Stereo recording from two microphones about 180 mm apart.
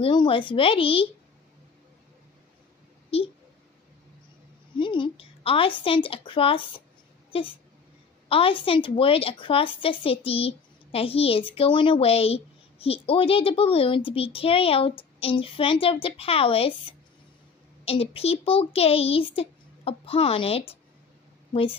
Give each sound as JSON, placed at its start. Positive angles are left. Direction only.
{"t": 0.0, "sound": "a woman's voice", "side_deg": 25}
{"t": 4.7, "sound": "a woman's voice", "side_deg": 25}